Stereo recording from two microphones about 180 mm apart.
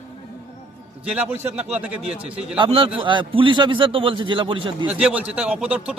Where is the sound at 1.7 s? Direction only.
5° right (ahead or behind).